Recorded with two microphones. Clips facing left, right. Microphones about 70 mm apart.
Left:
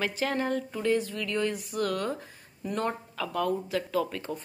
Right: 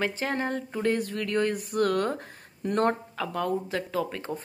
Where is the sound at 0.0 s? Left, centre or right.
Right.